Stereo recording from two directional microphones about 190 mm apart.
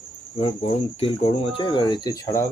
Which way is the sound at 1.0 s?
30° left (ahead or behind).